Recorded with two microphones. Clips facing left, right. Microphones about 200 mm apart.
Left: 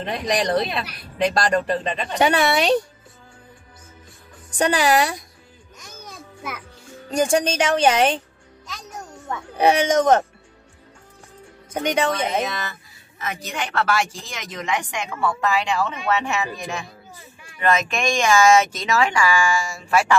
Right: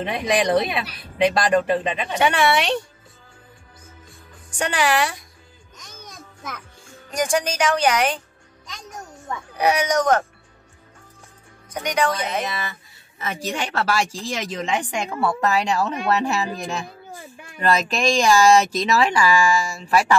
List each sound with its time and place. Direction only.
0.0 s speech: 5° right (ahead or behind)
2.1 s speech: 40° left (ahead or behind)
4.5 s speech: 40° left (ahead or behind)
5.8 s music: 10° left (ahead or behind)
7.1 s a woman's voice: 25° left (ahead or behind)
9.6 s a woman's voice: 25° left (ahead or behind)
11.7 s a woman's voice: 25° left (ahead or behind)
12.4 s speech: 10° right (ahead or behind)
13.2 s speech: 30° right (ahead or behind)